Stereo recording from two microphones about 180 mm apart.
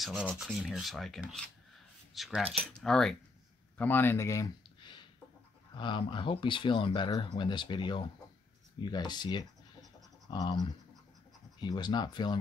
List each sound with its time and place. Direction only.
0.0 s rub: centre (ahead or behind)
3.7 s speech: 10° left (ahead or behind)